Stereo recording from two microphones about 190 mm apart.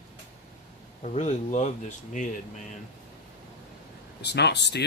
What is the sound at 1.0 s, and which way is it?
Speech, 40° left (ahead or behind).